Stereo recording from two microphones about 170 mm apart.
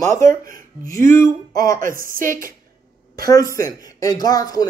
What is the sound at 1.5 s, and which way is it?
Speech, 20° left (ahead or behind).